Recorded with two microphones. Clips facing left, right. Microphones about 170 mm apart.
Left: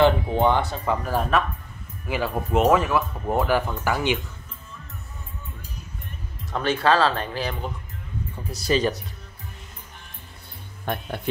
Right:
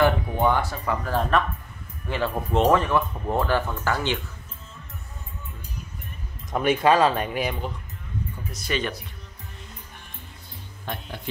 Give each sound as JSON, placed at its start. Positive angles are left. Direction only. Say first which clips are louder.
{"t": 0.0, "sound": "speech", "louder": "left 2 dB", "side_deg": 20}
{"t": 1.3, "sound": "speech", "louder": "even", "side_deg": 5}
{"t": 6.5, "sound": "speech", "louder": "right 1 dB", "side_deg": -15}
{"t": 8.5, "sound": "speech", "louder": "left 7 dB", "side_deg": 35}